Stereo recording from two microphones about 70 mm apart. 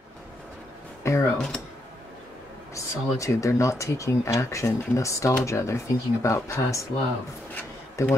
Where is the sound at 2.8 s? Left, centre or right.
Left.